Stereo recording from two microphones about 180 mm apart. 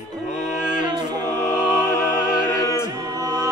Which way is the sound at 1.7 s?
5° right (ahead or behind).